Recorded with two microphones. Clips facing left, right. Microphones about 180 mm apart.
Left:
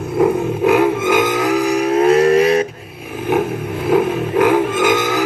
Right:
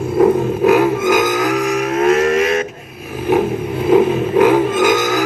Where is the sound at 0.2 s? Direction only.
10° left (ahead or behind).